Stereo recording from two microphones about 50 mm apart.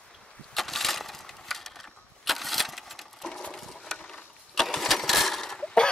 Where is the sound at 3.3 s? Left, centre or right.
Centre.